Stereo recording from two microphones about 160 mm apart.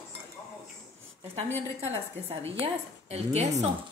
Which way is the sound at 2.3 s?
35° right (ahead or behind).